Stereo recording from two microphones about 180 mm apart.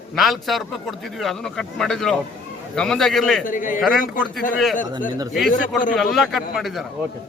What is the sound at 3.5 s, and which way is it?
Speech, 50° left (ahead or behind).